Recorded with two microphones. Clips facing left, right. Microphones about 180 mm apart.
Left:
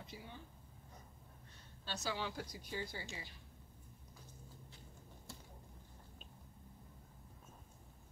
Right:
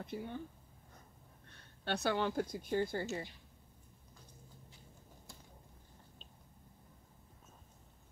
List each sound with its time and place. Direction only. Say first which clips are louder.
0.0 s speech: right 10 dB; 55° right (ahead or behind)
1.5 s a sound: right 9 dB; 60° right (ahead or behind)
2.5 s speech: right 10 dB; 50° right (ahead or behind)